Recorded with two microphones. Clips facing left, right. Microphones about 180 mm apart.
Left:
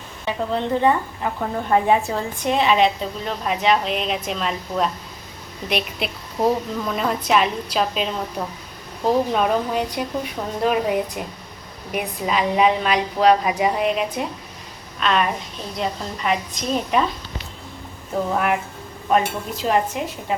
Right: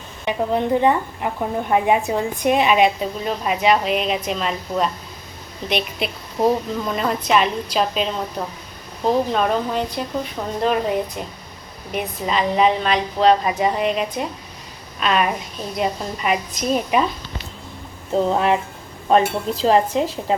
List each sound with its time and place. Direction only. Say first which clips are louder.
0.3 s a woman's voice: right 3 dB; 15° right (ahead or behind); by 10.9 s 5° left (ahead or behind)
11.9 s a woman's voice: even; 10° left (ahead or behind)
18.3 s speech: right 2 dB; 25° right (ahead or behind)
19.1 s a sound: right 3 dB; 30° right (ahead or behind)